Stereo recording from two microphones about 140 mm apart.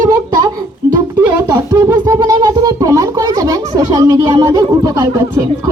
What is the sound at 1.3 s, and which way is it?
Speech, 20° right (ahead or behind).